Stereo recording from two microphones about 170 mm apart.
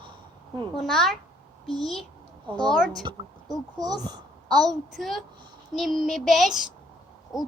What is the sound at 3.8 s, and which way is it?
Speech, 25° right (ahead or behind).